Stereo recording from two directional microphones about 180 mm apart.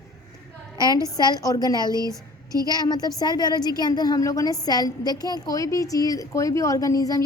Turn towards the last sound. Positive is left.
turn(degrees=20)  # may be behind; listen again after turning